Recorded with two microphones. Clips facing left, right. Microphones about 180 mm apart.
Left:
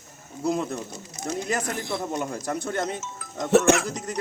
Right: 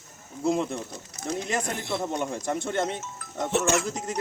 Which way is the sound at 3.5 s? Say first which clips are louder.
Left 6 dB; 60° left (ahead or behind).